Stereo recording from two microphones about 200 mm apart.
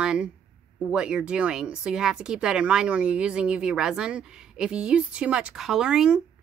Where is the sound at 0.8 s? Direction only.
5° right (ahead or behind).